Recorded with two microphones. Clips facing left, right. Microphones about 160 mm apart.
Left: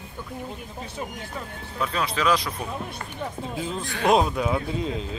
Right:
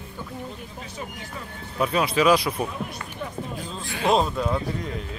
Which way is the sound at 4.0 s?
5° left (ahead or behind).